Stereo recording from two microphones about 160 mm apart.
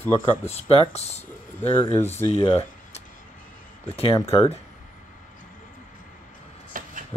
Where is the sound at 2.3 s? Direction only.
35° left (ahead or behind).